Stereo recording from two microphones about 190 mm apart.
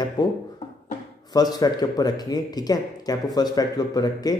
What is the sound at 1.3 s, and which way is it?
A man's voice, 20° left (ahead or behind).